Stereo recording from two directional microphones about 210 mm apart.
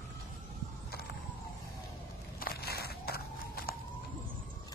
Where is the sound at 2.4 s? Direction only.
45° left (ahead or behind).